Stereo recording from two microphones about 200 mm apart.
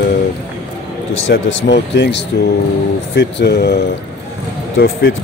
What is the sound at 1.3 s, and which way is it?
Speech, 60° left (ahead or behind).